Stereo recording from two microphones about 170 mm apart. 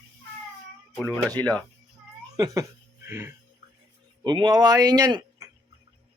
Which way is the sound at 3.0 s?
15° right (ahead or behind).